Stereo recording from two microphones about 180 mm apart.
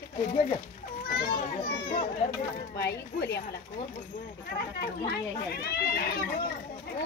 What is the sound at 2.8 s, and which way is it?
Speech, 65° left (ahead or behind).